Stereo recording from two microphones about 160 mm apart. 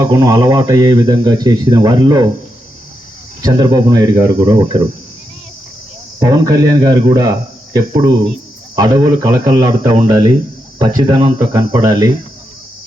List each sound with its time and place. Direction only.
0.1 s speech: 25° right (ahead or behind)
3.4 s speech: 25° right (ahead or behind)
6.1 s speech: 20° right (ahead or behind)